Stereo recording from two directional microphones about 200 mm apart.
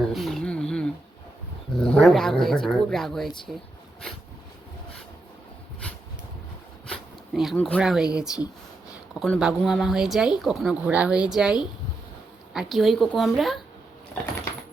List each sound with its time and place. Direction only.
0.1 s a sound: centre (ahead or behind)
1.9 s speech: centre (ahead or behind)
6.8 s zipper: centre (ahead or behind)
7.8 s speech: 5° right (ahead or behind)